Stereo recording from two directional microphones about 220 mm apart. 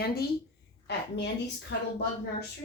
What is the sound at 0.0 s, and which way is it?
A woman's voice, 45° left (ahead or behind).